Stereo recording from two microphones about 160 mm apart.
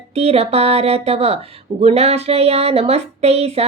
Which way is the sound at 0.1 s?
40° right (ahead or behind).